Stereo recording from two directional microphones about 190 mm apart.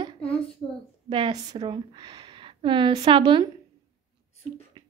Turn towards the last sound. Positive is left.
turn(degrees=-25)  # may be behind; listen again after turning